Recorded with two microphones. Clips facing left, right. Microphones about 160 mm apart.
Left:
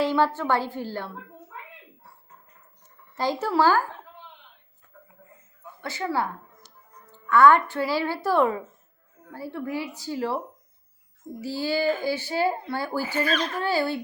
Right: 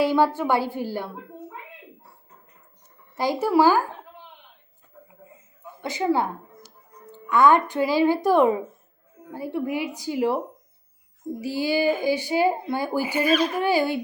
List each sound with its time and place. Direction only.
0.0 s speech: 10° right (ahead or behind)
3.2 s speech: 10° right (ahead or behind)
5.8 s a woman's voice: 20° right (ahead or behind)